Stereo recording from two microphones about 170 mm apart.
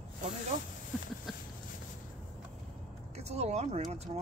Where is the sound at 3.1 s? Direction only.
40° right (ahead or behind).